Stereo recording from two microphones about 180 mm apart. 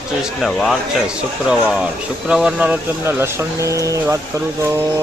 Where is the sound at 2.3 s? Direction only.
5° right (ahead or behind).